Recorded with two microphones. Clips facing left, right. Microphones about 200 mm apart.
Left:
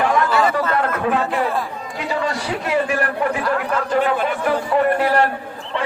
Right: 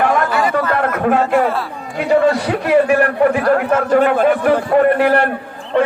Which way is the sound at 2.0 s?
55° right (ahead or behind).